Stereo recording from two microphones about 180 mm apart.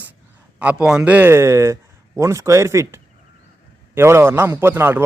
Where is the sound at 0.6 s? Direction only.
5° right (ahead or behind).